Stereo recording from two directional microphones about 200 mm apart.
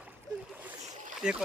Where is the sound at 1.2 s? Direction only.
5° right (ahead or behind).